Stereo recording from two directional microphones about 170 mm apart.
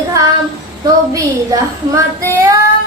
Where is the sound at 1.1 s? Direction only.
20° right (ahead or behind).